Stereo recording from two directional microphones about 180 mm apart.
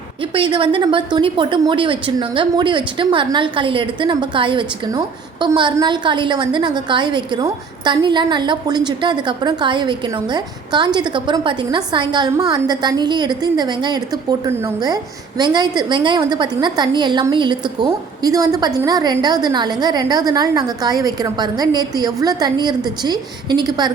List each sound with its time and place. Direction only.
0.3 s a woman's voice: 30° right (ahead or behind)